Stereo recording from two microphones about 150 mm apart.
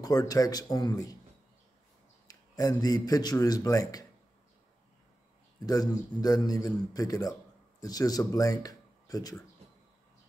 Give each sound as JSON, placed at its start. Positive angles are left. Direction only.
{"t": 0.0, "sound": "a man's voice", "side_deg": 25}
{"t": 2.2, "sound": "a man's voice", "side_deg": 25}
{"t": 5.7, "sound": "a man's voice", "side_deg": 25}